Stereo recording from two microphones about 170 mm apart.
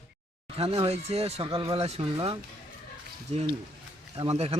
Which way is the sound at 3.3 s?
40° right (ahead or behind).